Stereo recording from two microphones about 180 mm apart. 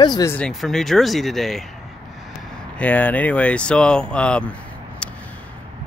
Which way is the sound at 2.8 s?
10° left (ahead or behind).